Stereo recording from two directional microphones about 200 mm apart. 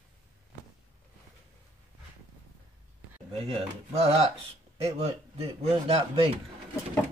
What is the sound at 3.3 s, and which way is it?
Speech, 30° right (ahead or behind).